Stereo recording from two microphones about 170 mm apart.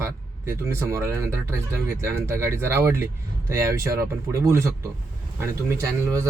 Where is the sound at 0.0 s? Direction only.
15° right (ahead or behind).